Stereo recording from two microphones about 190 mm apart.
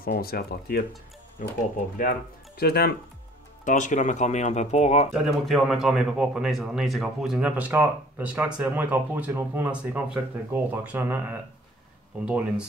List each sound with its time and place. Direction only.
0.0 s speech: 50° left (ahead or behind)
2.0 s speech: 50° left (ahead or behind)
3.6 s speech: 40° left (ahead or behind)
5.1 s speech: centre (ahead or behind)